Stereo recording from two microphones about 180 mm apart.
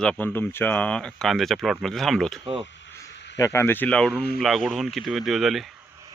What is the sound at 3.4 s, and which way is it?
Speech, 15° left (ahead or behind).